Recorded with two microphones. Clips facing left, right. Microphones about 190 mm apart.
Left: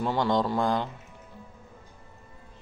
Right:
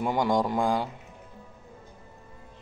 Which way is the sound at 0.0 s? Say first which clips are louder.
Even; 10° right (ahead or behind).